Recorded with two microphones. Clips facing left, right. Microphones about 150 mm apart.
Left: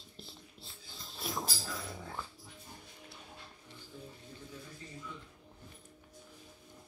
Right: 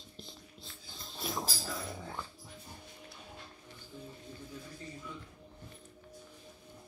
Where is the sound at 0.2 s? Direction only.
5° left (ahead or behind).